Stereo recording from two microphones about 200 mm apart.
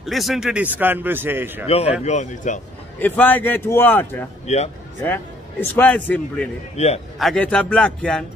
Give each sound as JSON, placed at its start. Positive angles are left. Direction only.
{"t": 0.0, "sound": "speech", "side_deg": 0}
{"t": 1.7, "sound": "speech", "side_deg": 30}
{"t": 3.0, "sound": "a man's voice", "side_deg": 10}